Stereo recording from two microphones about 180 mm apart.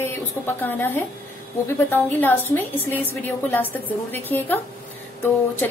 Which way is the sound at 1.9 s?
10° left (ahead or behind).